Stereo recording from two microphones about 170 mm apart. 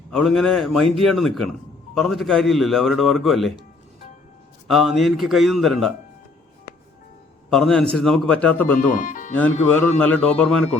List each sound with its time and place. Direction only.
0.1 s speech: centre (ahead or behind)
4.7 s speech: centre (ahead or behind)
7.5 s speech: centre (ahead or behind)
9.0 s speech: 50° left (ahead or behind)
9.3 s speech: 10° left (ahead or behind)